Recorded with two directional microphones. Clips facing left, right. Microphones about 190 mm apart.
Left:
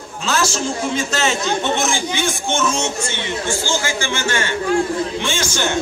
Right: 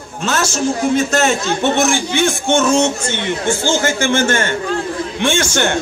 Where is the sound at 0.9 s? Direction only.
50° right (ahead or behind).